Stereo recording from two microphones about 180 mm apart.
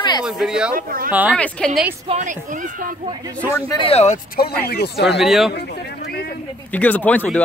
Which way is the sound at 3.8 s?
35° left (ahead or behind).